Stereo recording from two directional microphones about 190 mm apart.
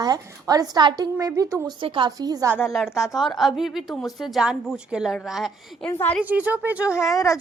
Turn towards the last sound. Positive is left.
turn(degrees=15)  # may be behind; listen again after turning